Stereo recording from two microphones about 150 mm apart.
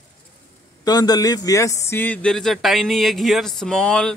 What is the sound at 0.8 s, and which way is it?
A man's voice, 25° left (ahead or behind).